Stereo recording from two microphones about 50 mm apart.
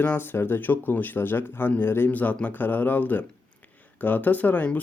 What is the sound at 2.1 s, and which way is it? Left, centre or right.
Speech, left.